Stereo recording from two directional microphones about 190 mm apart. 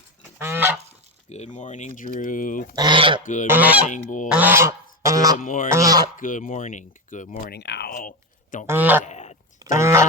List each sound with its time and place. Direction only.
0.3 s goose: 10° right (ahead or behind)
1.3 s speech: 40° left (ahead or behind)
2.7 s speech: 25° right (ahead or behind)
3.2 s speech: 45° left (ahead or behind)
3.5 s speech: 10° right (ahead or behind)
3.8 s speech: 40° left (ahead or behind)
4.3 s goose: 10° right (ahead or behind)
5.4 s speech: 45° left (ahead or behind)
5.7 s speech: 20° right (ahead or behind)
6.1 s speech: 45° left (ahead or behind); by 7.9 s 60° left (ahead or behind)
7.9 s a sound: 45° left (ahead or behind)
8.6 s speech: 10° right (ahead or behind)
9.0 s a sound: 35° left (ahead or behind)
9.6 s duck: 15° right (ahead or behind)